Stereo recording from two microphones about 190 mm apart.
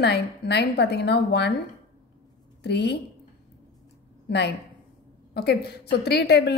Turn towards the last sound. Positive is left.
turn(degrees=60)  # may be behind; listen again after turning